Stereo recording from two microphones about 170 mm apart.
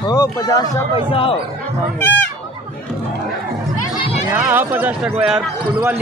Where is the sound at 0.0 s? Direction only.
20° left (ahead or behind).